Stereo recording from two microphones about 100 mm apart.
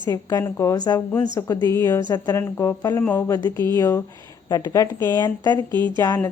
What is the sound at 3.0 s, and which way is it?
Speech, 20° left (ahead or behind).